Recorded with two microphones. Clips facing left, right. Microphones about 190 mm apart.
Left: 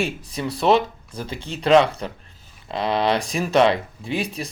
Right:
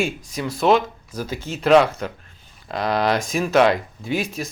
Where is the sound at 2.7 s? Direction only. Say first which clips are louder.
Even; 30° left (ahead or behind).